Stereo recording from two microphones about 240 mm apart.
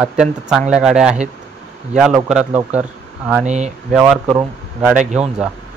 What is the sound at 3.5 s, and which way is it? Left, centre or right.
Speech, right.